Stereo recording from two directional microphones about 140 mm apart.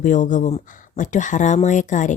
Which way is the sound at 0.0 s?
65° left (ahead or behind).